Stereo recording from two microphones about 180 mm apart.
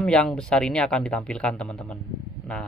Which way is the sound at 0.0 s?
5° left (ahead or behind).